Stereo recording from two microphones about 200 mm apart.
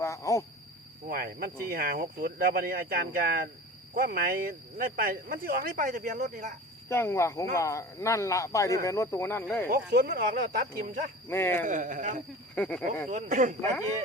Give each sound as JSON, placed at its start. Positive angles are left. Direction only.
{"t": 0.0, "sound": "cricket", "side_deg": 15}
{"t": 1.0, "sound": "speech", "side_deg": -45}
{"t": 6.8, "sound": "speech", "side_deg": 10}
{"t": 9.6, "sound": "speech", "side_deg": -50}
{"t": 11.3, "sound": "speech", "side_deg": 10}
{"t": 11.6, "sound": "speech", "side_deg": -40}
{"t": 12.5, "sound": "speech", "side_deg": 5}
{"t": 13.1, "sound": "speech", "side_deg": -40}